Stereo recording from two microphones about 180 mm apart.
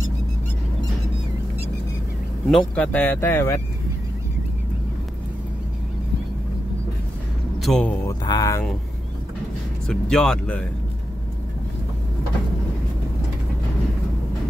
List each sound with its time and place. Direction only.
2.4 s speech: 5° left (ahead or behind)
7.5 s a man's voice: centre (ahead or behind)
8.1 s speech: 20° left (ahead or behind)
9.8 s speech: 5° left (ahead or behind)